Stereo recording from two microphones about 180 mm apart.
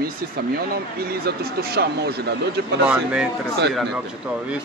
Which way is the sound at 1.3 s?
65° right (ahead or behind).